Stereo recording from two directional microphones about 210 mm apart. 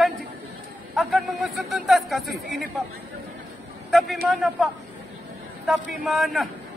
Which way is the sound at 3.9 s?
Centre (ahead or behind).